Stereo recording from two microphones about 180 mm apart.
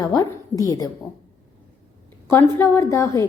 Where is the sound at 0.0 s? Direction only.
20° left (ahead or behind).